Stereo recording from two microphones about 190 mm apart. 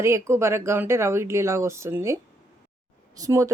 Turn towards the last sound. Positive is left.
turn(degrees=-15)  # may be behind; listen again after turning